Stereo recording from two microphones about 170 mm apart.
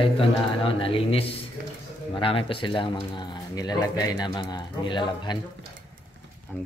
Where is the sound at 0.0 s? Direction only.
30° left (ahead or behind).